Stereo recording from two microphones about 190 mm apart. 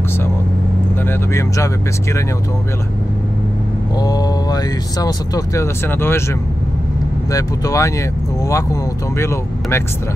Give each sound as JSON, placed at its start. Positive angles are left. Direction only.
{"t": 1.0, "sound": "speech", "side_deg": 15}
{"t": 4.0, "sound": "speech", "side_deg": 20}